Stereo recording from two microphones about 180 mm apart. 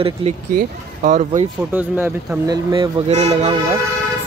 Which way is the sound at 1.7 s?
10° right (ahead or behind).